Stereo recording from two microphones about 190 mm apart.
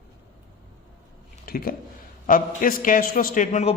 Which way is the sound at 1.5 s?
50° left (ahead or behind).